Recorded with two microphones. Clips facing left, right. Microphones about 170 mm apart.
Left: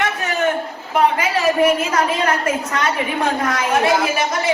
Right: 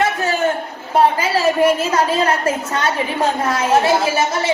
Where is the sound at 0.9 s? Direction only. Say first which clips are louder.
Right 2 dB; 30° right (ahead or behind).